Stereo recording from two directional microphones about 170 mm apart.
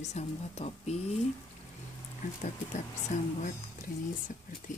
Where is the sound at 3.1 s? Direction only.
45° left (ahead or behind).